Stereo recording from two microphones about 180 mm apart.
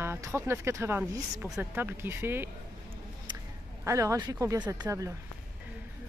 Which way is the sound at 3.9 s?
15° right (ahead or behind).